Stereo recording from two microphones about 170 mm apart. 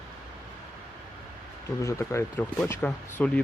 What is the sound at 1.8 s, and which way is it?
Speech, 15° left (ahead or behind).